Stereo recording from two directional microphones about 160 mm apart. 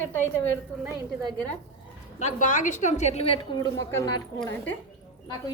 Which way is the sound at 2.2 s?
50° left (ahead or behind).